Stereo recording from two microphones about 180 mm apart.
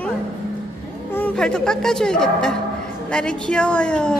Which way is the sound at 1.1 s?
5° left (ahead or behind).